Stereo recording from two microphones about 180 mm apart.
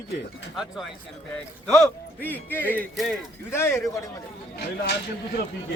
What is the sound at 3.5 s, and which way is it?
Speech, 15° left (ahead or behind).